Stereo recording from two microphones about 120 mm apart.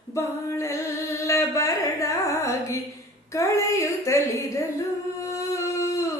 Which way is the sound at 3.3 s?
25° left (ahead or behind).